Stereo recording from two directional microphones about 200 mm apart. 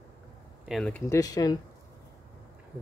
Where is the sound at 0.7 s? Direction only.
5° left (ahead or behind).